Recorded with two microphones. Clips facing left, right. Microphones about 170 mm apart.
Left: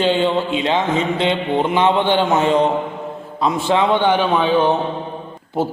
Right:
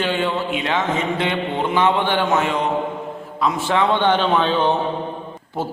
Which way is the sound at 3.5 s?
20° left (ahead or behind).